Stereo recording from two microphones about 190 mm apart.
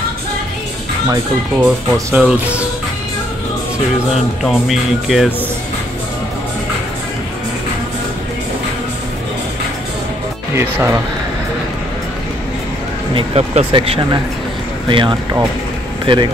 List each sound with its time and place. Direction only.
1.1 s speech: 10° right (ahead or behind)
4.1 s speech: centre (ahead or behind)
10.5 s speech: 15° right (ahead or behind)
13.1 s speech: 30° right (ahead or behind)